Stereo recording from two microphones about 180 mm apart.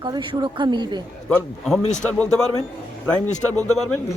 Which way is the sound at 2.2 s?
5° left (ahead or behind).